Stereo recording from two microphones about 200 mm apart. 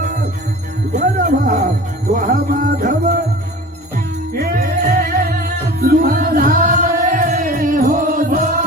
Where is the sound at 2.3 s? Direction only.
40° right (ahead or behind).